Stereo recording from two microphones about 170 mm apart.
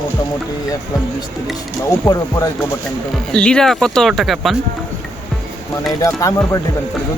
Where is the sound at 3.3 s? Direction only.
5° left (ahead or behind).